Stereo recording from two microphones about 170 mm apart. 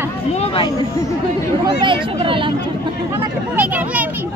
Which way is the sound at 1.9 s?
30° right (ahead or behind).